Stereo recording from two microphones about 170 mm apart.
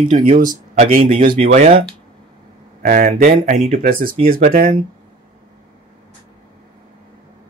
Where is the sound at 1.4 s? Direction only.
35° right (ahead or behind).